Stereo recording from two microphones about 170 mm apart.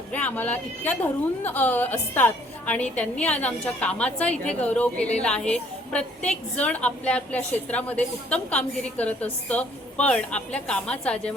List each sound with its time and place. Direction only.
0.1 s a woman's voice: 10° left (ahead or behind)